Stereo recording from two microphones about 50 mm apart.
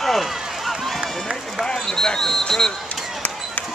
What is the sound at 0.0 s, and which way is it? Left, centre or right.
Run, centre.